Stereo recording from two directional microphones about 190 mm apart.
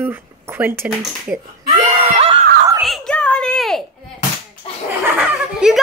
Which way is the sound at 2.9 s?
5° left (ahead or behind).